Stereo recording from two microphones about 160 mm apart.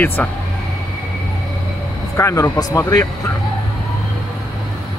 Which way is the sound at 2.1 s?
20° left (ahead or behind).